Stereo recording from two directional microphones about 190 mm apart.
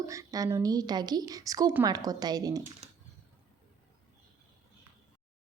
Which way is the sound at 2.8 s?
30° right (ahead or behind).